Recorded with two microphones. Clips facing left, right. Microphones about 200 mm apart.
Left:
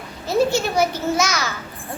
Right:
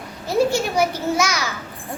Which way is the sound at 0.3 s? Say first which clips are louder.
Even; 10° right (ahead or behind).